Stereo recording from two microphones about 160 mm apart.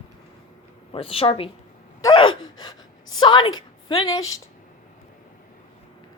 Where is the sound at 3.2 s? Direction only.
30° left (ahead or behind).